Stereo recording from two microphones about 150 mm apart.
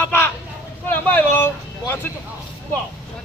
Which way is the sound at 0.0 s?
15° left (ahead or behind).